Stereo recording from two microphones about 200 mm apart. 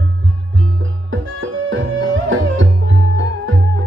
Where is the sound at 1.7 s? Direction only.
75° right (ahead or behind).